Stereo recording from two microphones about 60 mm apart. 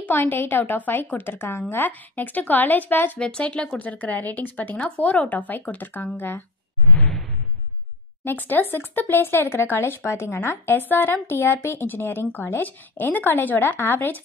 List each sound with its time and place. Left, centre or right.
0.0 s speech: left
3.2 s speech: centre
3.8 s speech: left
6.9 s whoosh: centre
8.2 s speech: left